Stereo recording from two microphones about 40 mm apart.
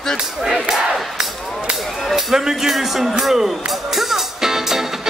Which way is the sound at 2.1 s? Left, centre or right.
Centre.